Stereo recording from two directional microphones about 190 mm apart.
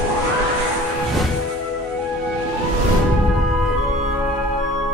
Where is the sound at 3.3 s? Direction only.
Centre (ahead or behind).